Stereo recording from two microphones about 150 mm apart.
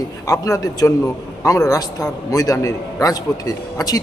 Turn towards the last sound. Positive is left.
turn(degrees=25)  # may be behind; listen again after turning